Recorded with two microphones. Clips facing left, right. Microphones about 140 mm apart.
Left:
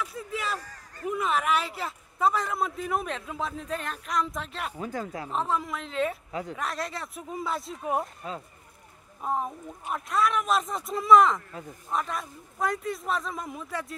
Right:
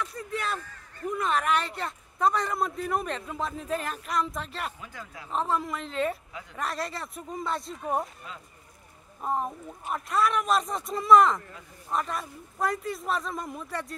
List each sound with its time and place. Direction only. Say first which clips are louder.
0.0 s a sound: even; centre (ahead or behind)
0.6 s a sound: even; 40° left (ahead or behind)
1.0 s a man's voice: even; 5° left (ahead or behind)
4.7 s speech: left 10 dB; 40° left (ahead or behind)
5.3 s a man's voice: right 2 dB; centre (ahead or behind)
9.2 s a man's voice: even; centre (ahead or behind)